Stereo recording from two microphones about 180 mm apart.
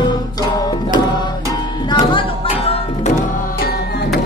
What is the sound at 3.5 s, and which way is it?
Music, 60° left (ahead or behind).